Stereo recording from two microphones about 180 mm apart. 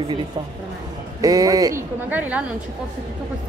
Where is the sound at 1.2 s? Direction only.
20° right (ahead or behind).